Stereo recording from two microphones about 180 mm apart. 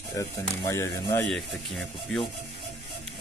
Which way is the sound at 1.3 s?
Centre (ahead or behind).